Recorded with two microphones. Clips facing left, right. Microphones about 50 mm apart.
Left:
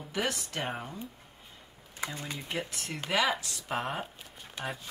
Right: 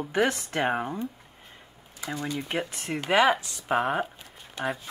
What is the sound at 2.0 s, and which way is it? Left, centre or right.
Speech, left.